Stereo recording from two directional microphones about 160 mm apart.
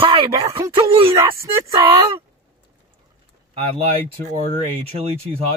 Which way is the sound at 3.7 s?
40° right (ahead or behind).